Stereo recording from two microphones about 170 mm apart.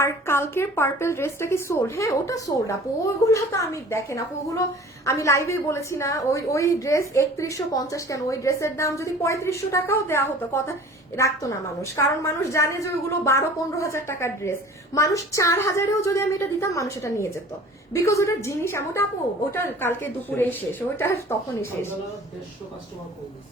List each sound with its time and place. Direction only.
0.0 s a woman's voice: 15° left (ahead or behind)